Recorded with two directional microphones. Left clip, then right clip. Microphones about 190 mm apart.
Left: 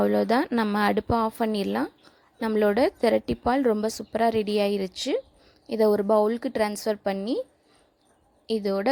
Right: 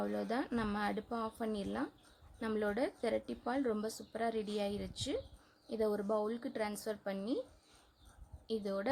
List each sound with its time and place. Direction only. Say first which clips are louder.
0.0 s a woman's voice: left 16 dB; 40° left (ahead or behind)
8.4 s a woman's voice: left 12 dB; 35° left (ahead or behind)